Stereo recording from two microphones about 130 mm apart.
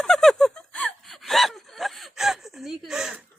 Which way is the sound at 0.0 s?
Centre (ahead or behind).